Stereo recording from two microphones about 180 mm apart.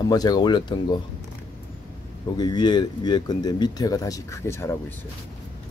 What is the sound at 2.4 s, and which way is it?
Speech, 25° left (ahead or behind).